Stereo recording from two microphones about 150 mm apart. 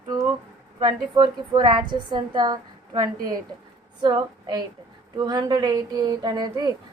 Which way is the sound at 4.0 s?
30° right (ahead or behind).